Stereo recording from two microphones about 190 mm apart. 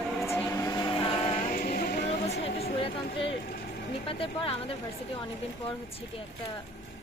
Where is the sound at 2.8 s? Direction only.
30° left (ahead or behind).